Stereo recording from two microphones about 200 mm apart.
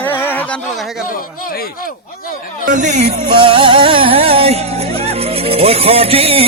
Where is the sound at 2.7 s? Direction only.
40° right (ahead or behind).